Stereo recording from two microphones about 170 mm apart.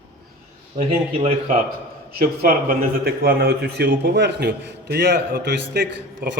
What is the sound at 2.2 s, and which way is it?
Speech, 65° right (ahead or behind).